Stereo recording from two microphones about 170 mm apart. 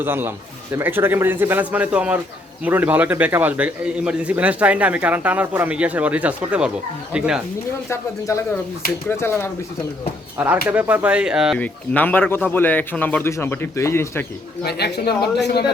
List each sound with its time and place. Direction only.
0.0 s a man's voice: 10° right (ahead or behind)
8.3 s a man's voice: 20° left (ahead or behind)
10.3 s a man's voice: 10° right (ahead or behind)
11.6 s a man's voice: 10° left (ahead or behind)
14.6 s speech: 70° left (ahead or behind)